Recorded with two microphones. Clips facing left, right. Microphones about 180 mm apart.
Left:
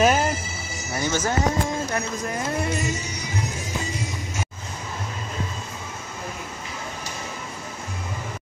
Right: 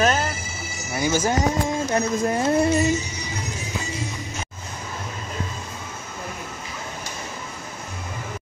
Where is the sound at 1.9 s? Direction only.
30° right (ahead or behind).